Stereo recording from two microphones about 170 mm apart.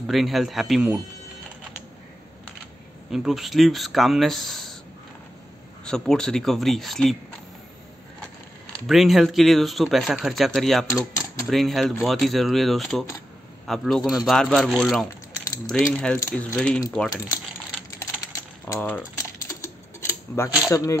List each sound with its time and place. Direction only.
0.0 s speech: centre (ahead or behind)
3.1 s speech: centre (ahead or behind)
5.9 s speech: 5° left (ahead or behind)
8.8 s speech: centre (ahead or behind)
10.9 s speech: 20° left (ahead or behind)
11.4 s speech: centre (ahead or behind)
16.2 s speech: 15° left (ahead or behind)
18.7 s typewriter: 10° left (ahead or behind)
20.7 s speech: 20° left (ahead or behind)